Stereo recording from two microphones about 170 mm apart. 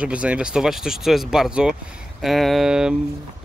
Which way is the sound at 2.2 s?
Centre (ahead or behind).